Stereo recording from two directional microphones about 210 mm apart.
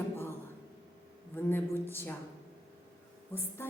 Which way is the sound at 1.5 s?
10° left (ahead or behind).